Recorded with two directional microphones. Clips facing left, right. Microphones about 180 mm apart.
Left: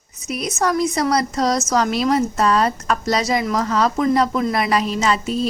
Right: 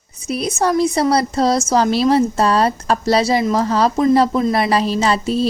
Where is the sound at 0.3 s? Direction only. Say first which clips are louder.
Right 3 dB; 30° right (ahead or behind).